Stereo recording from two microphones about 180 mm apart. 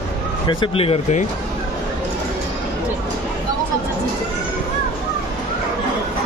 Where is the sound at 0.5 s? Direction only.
30° left (ahead or behind).